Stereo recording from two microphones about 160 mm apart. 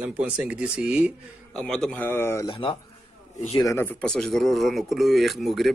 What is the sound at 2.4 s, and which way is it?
Speech, 35° left (ahead or behind).